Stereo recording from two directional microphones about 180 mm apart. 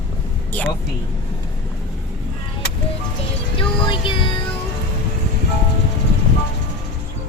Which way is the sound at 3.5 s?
25° left (ahead or behind).